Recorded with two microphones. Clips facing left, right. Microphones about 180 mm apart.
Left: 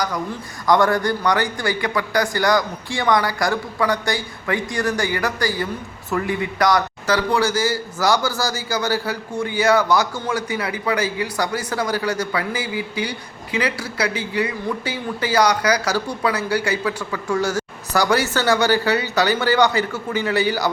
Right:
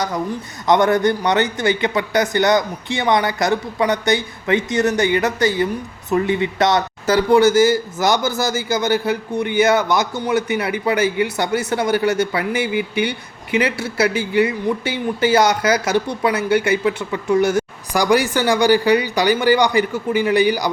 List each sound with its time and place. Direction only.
0.3 s a man's voice: 20° right (ahead or behind)